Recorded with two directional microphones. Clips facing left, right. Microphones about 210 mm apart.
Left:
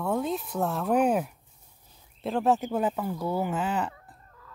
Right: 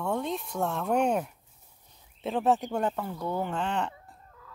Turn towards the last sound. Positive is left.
turn(degrees=5)  # may be behind; listen again after turning